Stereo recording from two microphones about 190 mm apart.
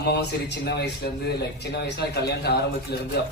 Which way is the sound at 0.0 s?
60° left (ahead or behind).